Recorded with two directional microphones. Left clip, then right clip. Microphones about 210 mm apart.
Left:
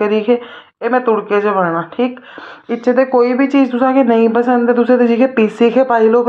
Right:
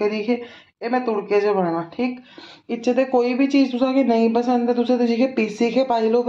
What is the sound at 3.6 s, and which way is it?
Speech, 30° left (ahead or behind).